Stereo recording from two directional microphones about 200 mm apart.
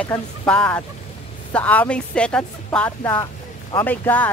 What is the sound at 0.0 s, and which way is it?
Speech, 5° left (ahead or behind).